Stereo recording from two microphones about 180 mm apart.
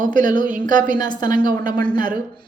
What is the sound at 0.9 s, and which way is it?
Speech, 25° left (ahead or behind).